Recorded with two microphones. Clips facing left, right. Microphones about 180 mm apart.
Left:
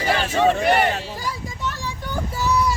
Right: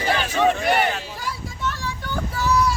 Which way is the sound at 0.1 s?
30° left (ahead or behind).